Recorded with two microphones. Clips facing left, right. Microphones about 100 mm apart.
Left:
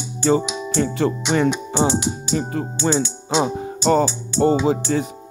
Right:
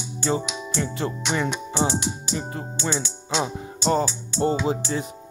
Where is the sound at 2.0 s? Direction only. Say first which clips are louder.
Left 6 dB; 80° left.